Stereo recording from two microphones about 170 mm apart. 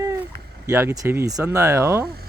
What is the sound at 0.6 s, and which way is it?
Speech, 15° right (ahead or behind).